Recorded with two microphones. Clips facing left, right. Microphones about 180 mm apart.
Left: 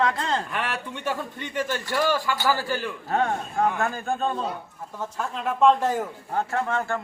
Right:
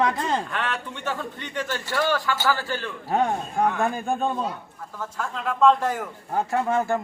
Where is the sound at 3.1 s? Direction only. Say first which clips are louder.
Right 2 dB; 15° right (ahead or behind).